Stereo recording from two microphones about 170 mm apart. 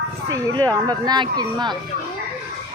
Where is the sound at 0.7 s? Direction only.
25° right (ahead or behind).